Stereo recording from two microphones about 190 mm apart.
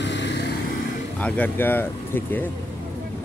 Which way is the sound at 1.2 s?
10° left (ahead or behind).